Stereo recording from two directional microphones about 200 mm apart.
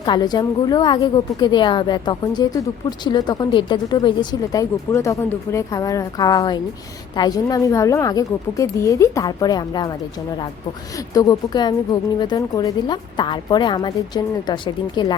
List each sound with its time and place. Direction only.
0.0 s a woman's voice: 20° left (ahead or behind)